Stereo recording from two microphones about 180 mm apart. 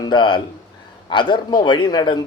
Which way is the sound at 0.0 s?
25° left (ahead or behind).